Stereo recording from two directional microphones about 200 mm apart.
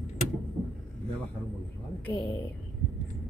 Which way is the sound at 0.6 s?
15° left (ahead or behind).